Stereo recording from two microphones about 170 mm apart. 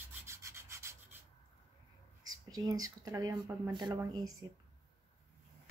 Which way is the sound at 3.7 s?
20° right (ahead or behind).